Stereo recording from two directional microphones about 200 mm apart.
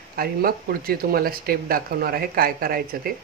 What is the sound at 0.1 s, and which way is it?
Speech, 50° right (ahead or behind).